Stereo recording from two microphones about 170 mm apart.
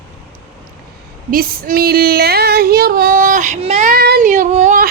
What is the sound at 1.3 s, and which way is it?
Female singing, 60° right (ahead or behind).